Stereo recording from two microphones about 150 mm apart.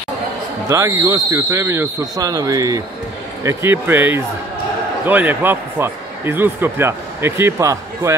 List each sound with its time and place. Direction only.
0.7 s speech: 20° right (ahead or behind)